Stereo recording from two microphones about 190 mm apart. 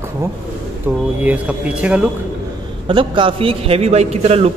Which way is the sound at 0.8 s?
10° right (ahead or behind).